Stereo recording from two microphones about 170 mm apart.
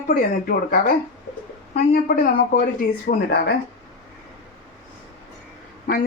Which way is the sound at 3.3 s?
70° left (ahead or behind).